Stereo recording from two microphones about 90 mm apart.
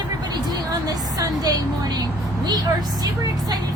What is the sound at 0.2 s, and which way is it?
A woman's voice, 50° right (ahead or behind).